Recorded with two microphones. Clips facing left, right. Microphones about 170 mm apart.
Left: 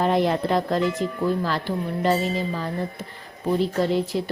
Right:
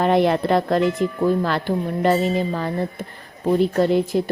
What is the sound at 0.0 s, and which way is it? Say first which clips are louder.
Speech: right 4 dB; 65° right (ahead or behind).